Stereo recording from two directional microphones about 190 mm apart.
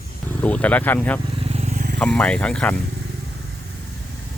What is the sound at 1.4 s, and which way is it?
Vehicle, 35° right (ahead or behind).